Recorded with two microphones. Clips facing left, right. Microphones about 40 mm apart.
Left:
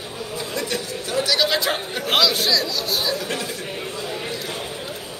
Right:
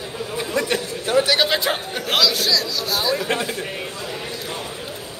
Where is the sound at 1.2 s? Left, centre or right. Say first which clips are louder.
Right 3 dB; right.